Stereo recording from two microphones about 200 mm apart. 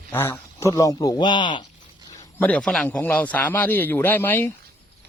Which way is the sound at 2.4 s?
5° left (ahead or behind).